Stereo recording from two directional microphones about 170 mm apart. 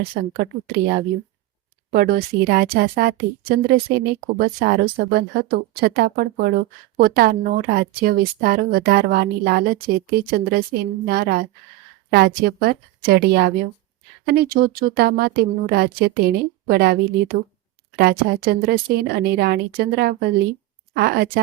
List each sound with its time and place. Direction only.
0.0 s a woman's voice: 60° right (ahead or behind)
1.9 s a woman's voice: 60° right (ahead or behind)